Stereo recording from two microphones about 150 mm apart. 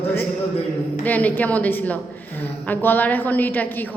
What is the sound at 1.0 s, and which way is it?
A woman's voice, 10° left (ahead or behind).